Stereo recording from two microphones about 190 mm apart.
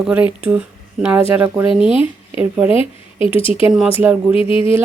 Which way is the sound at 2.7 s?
30° left (ahead or behind).